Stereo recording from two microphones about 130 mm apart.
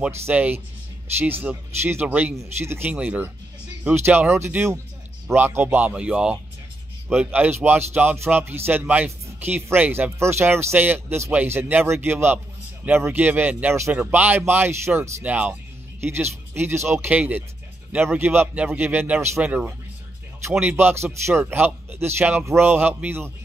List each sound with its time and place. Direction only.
0.3 s speech: 10° right (ahead or behind)